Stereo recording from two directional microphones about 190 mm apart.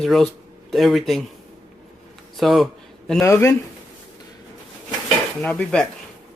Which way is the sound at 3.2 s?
15° left (ahead or behind).